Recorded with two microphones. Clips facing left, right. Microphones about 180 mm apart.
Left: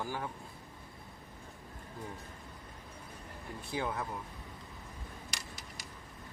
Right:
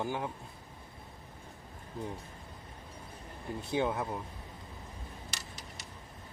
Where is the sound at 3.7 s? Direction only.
25° right (ahead or behind).